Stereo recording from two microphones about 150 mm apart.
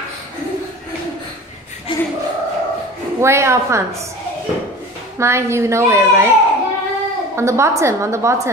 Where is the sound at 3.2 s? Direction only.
20° right (ahead or behind).